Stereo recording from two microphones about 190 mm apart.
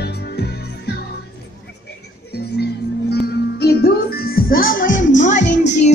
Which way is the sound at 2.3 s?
55° left (ahead or behind).